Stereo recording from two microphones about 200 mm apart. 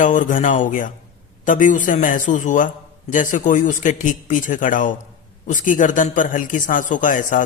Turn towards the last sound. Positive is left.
turn(degrees=40)  # may be behind; listen again after turning